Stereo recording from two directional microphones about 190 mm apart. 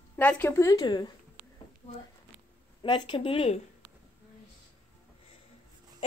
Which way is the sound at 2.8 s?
25° left (ahead or behind).